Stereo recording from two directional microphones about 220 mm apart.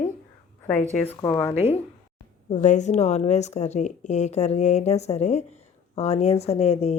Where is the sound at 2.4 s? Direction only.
35° left (ahead or behind).